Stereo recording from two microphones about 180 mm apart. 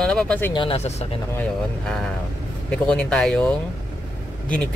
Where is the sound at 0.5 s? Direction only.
30° left (ahead or behind).